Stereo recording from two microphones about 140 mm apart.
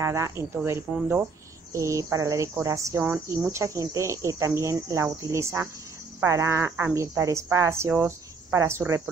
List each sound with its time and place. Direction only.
0.0 s speech: 20° right (ahead or behind)
1.7 s speech: 20° right (ahead or behind)